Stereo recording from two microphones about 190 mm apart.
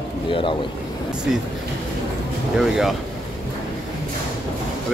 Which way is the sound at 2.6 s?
Centre (ahead or behind).